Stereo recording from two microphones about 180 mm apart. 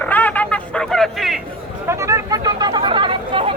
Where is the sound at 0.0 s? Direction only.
10° left (ahead or behind).